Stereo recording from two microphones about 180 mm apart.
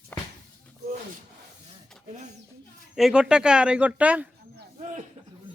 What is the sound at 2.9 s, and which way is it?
Speech, 5° right (ahead or behind).